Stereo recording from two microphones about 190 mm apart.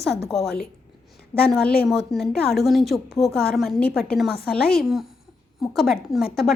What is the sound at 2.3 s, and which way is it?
Speech, 55° left (ahead or behind).